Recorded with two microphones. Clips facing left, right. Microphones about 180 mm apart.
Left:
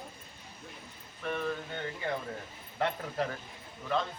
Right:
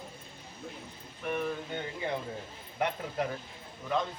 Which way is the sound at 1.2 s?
15° right (ahead or behind).